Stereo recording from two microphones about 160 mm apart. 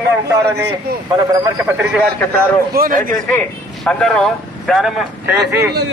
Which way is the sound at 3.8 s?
5° left (ahead or behind).